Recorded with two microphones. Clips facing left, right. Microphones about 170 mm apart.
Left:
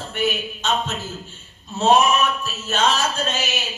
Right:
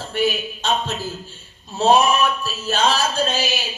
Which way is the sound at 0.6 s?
35° right (ahead or behind).